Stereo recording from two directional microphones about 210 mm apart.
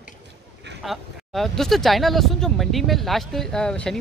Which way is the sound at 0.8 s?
Centre (ahead or behind).